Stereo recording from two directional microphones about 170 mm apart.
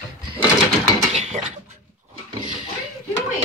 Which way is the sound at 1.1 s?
40° right (ahead or behind).